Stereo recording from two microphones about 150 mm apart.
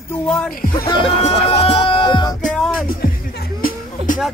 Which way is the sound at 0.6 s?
75° left (ahead or behind).